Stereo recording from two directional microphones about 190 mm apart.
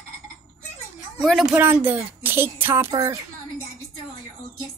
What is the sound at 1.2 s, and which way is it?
Speech, centre (ahead or behind).